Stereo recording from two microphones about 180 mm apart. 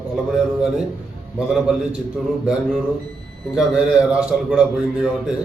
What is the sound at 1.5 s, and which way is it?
Speech, 5° right (ahead or behind).